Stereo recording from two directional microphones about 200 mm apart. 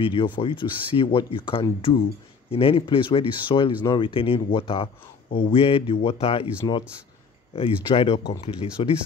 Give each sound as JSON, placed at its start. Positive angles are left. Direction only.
{"t": 0.0, "sound": "speech", "side_deg": 25}
{"t": 7.5, "sound": "speech", "side_deg": 30}